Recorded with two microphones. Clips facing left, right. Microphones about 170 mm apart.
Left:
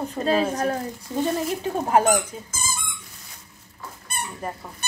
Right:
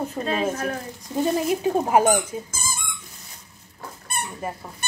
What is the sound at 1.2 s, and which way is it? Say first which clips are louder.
Speech: right 3 dB; 10° right (ahead or behind).